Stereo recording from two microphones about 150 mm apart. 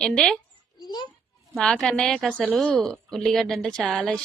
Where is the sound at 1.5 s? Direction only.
5° left (ahead or behind).